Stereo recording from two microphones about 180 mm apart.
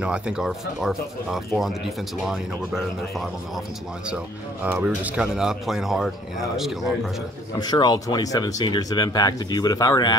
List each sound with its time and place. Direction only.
0.0 s speech: 5° right (ahead or behind)
4.6 s speech: 10° right (ahead or behind)
7.5 s speech: 25° left (ahead or behind)